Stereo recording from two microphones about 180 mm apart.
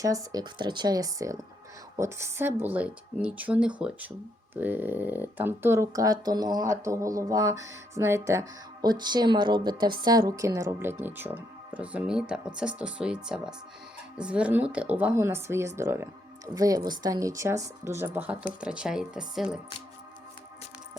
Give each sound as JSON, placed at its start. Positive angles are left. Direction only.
{"t": 0.0, "sound": "speech", "side_deg": -20}